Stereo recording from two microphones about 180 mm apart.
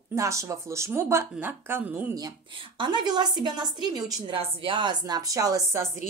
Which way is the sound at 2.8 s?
25° right (ahead or behind).